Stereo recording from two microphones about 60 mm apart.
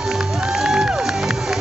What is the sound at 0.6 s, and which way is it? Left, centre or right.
Music, centre.